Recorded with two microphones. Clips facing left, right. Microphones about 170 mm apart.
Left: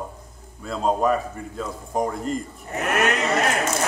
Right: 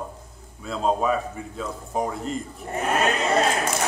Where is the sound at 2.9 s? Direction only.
70° left (ahead or behind).